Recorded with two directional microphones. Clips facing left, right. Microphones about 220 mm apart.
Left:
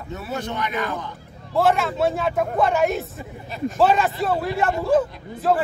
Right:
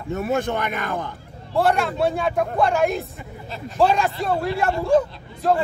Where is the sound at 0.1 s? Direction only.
50° right (ahead or behind).